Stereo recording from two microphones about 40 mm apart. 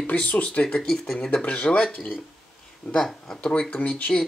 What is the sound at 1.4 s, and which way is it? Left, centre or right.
Speech, left.